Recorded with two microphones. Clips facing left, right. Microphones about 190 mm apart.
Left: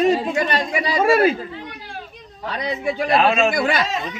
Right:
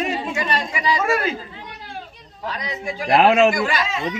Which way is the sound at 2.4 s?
60° left (ahead or behind).